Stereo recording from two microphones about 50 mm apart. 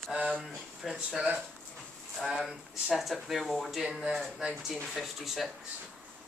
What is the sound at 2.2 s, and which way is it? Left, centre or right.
A man's voice, centre.